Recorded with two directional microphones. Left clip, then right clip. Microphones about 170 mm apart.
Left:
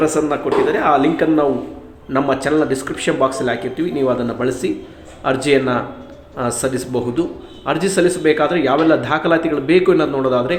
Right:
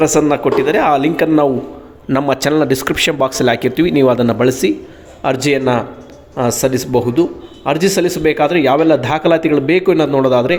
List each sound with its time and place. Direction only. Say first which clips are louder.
0.0 s a man's voice: right 5 dB; 50° right (ahead or behind)